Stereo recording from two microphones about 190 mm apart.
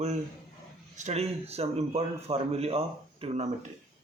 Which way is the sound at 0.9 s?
35° right (ahead or behind).